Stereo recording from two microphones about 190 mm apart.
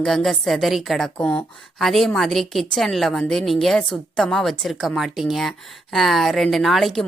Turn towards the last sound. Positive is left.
turn(degrees=0)  # may be behind; listen again after turning